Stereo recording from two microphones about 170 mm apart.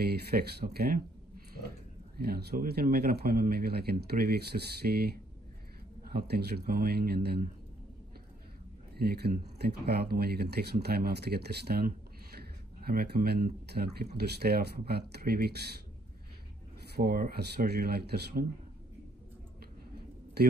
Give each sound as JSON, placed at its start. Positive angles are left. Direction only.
{"t": 0.0, "sound": "speech", "side_deg": -70}
{"t": 2.1, "sound": "speech", "side_deg": -65}
{"t": 8.9, "sound": "speech", "side_deg": -70}
{"t": 16.9, "sound": "speech", "side_deg": -60}